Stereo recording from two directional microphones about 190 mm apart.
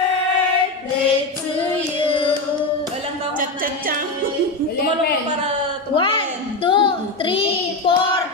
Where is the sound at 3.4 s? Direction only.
45° right (ahead or behind).